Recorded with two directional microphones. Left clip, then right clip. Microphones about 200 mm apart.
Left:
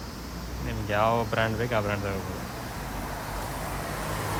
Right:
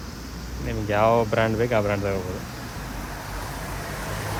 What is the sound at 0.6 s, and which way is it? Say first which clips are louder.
Speech: right 5 dB; 15° left (ahead or behind).